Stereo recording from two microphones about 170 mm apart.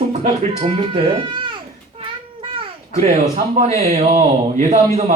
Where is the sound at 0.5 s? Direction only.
30° right (ahead or behind).